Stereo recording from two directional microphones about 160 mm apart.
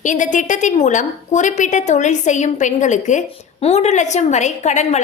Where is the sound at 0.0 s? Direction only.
50° left (ahead or behind).